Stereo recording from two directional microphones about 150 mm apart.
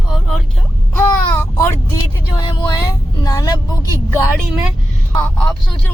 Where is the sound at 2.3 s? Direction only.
30° left (ahead or behind).